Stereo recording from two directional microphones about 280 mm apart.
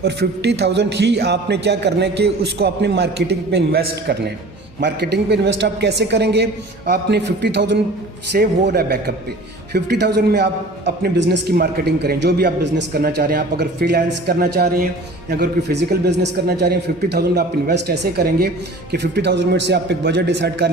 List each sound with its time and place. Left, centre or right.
0.0 s a man's voice: right